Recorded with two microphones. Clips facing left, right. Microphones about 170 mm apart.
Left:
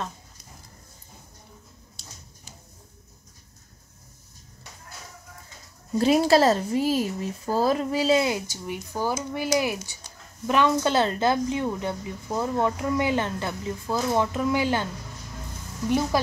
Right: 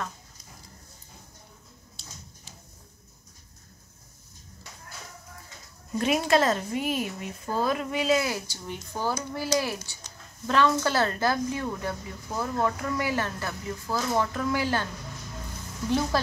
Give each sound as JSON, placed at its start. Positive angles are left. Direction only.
{"t": 5.9, "sound": "speech", "side_deg": 35}
{"t": 8.6, "sound": "a woman's voice", "side_deg": 10}